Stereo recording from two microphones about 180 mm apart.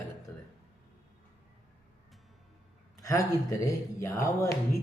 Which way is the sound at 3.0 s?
20° left (ahead or behind).